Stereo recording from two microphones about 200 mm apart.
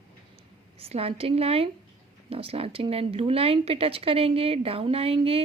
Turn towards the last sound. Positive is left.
turn(degrees=-30)  # may be behind; listen again after turning